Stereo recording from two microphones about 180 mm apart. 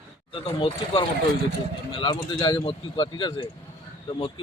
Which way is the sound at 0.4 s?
30° left (ahead or behind).